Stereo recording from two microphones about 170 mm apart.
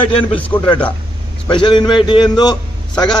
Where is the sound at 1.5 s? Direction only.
30° left (ahead or behind).